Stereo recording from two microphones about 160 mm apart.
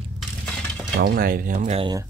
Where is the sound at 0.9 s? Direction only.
70° right (ahead or behind).